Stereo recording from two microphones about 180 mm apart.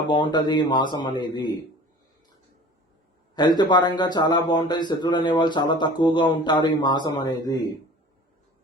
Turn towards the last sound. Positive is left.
turn(degrees=20)  # may be behind; listen again after turning